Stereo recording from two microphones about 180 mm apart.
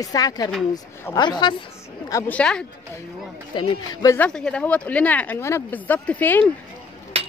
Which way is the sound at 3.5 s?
20° left (ahead or behind).